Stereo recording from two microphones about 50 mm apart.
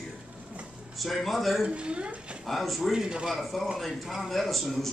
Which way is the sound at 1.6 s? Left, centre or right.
Right.